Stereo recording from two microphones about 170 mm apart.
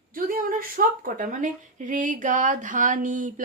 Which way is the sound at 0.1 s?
55° right (ahead or behind).